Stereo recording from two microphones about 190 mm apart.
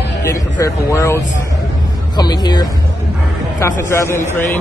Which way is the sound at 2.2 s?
20° left (ahead or behind).